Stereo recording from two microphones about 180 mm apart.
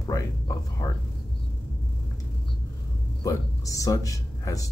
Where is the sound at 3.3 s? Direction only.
20° left (ahead or behind).